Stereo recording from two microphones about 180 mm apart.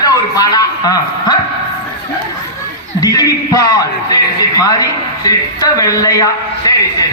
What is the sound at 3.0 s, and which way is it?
A man's voice, 20° left (ahead or behind).